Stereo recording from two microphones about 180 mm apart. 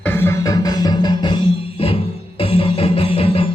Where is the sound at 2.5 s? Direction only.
30° left (ahead or behind).